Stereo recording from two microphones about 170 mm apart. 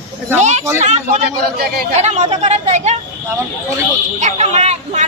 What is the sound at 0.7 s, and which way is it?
Speech, 40° right (ahead or behind).